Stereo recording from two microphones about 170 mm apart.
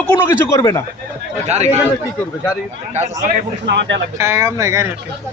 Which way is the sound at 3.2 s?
45° right (ahead or behind).